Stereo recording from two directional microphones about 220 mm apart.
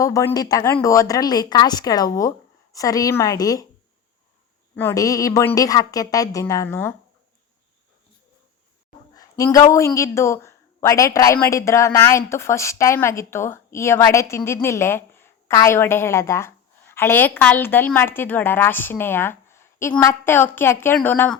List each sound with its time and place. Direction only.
0.0 s speech: 15° left (ahead or behind)
4.7 s speech: 10° left (ahead or behind)
9.4 s speech: 15° left (ahead or behind)